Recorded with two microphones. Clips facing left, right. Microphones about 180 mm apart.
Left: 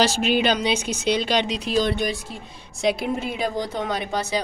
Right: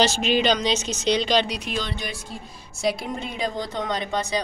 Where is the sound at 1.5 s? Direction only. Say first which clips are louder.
Left 4 dB; 30° left (ahead or behind).